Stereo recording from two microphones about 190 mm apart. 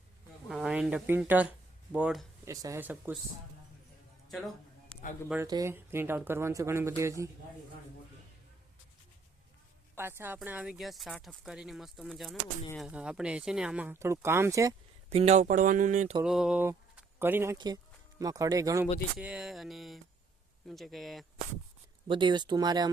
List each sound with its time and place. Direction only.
0.4 s speech: centre (ahead or behind)
2.5 s speech: 15° right (ahead or behind)
5.5 s speech: 15° right (ahead or behind)
10.0 s speech: 10° right (ahead or behind)
15.1 s speech: 35° right (ahead or behind)
16.2 s speech: 5° right (ahead or behind)
19.2 s speech: 5° right (ahead or behind)
22.0 s speech: 25° right (ahead or behind)